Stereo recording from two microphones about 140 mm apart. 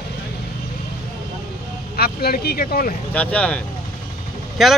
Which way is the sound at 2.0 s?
90° left.